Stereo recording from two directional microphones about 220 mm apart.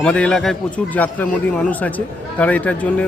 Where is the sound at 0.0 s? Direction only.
5° left (ahead or behind).